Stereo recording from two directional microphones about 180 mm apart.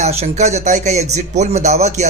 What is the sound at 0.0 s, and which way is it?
A man's voice, 35° right (ahead or behind).